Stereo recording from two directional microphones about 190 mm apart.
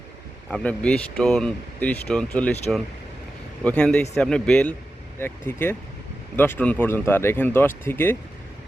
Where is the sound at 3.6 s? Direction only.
5° left (ahead or behind).